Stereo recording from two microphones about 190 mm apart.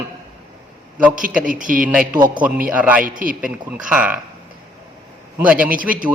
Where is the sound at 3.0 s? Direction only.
45° right (ahead or behind).